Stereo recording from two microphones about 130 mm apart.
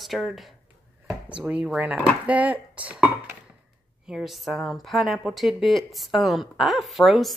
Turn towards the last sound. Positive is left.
turn(degrees=0)  # may be behind; listen again after turning